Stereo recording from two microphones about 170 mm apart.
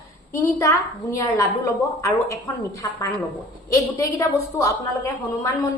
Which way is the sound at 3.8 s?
20° left (ahead or behind).